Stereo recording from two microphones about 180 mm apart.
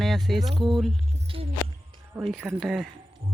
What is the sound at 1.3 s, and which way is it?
Music, 30° right (ahead or behind).